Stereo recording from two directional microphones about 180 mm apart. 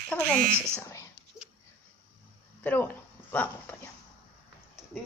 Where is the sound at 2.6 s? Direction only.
10° left (ahead or behind).